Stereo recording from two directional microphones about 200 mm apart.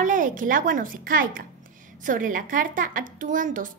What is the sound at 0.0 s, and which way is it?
A woman's voice, 40° right (ahead or behind).